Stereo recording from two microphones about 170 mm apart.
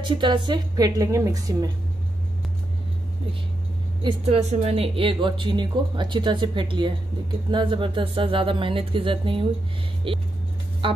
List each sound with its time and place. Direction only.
0.2 s speech: 25° right (ahead or behind)
4.0 s speech: 35° right (ahead or behind)